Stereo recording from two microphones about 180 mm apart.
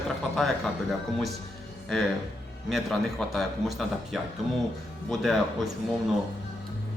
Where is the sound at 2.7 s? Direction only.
Centre (ahead or behind).